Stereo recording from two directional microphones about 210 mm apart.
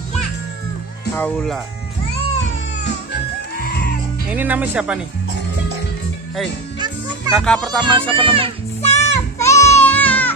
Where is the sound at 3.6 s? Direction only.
45° left (ahead or behind).